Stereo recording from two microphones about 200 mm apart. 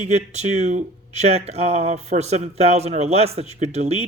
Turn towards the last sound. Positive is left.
turn(degrees=-35)  # may be behind; listen again after turning